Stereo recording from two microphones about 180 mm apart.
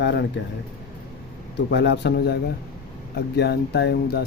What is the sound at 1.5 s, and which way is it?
Speech, 75° left (ahead or behind).